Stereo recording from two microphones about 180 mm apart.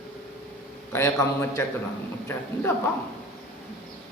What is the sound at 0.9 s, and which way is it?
Speech, 15° left (ahead or behind).